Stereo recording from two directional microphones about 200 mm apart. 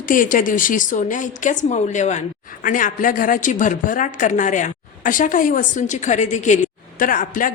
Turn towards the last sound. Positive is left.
turn(degrees=45)  # may be behind; listen again after turning